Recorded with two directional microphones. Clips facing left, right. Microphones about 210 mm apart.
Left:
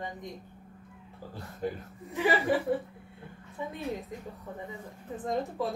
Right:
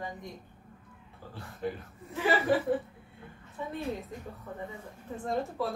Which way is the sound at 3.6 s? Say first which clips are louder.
Left 1 dB; 15° left (ahead or behind).